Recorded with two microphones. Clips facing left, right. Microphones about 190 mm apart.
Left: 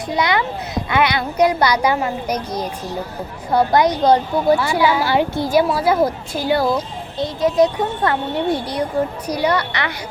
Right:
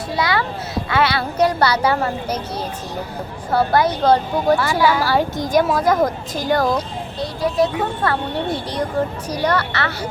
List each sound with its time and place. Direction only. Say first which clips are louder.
0.1 s speech: left 2 dB; 20° left (ahead or behind)
7.2 s speech: left 3 dB; 20° left (ahead or behind)